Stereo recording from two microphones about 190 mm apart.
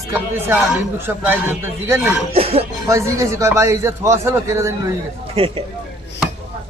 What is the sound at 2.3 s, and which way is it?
Speech, 30° right (ahead or behind).